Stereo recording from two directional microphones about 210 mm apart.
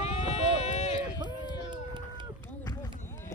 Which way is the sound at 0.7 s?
35° left (ahead or behind).